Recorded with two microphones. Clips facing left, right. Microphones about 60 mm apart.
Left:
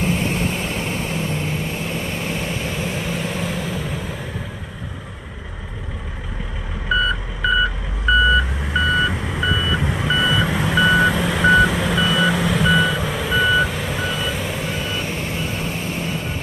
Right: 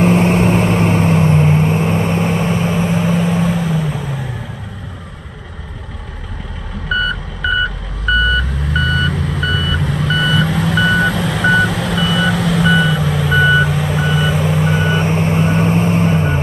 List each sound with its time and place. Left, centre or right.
0.0 s vehicle: right
2.5 s vehicle: centre
6.9 s reversing beeps: centre
15.0 s vehicle: right
15.4 s vehicle: right